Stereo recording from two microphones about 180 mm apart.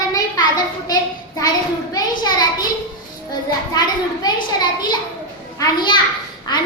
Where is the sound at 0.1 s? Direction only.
20° left (ahead or behind).